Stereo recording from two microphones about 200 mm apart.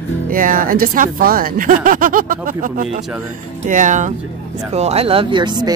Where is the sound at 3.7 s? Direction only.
40° right (ahead or behind).